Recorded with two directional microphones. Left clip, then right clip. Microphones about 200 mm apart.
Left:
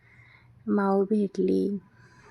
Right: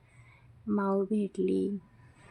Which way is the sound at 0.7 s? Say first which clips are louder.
Left 5 dB; 15° left (ahead or behind).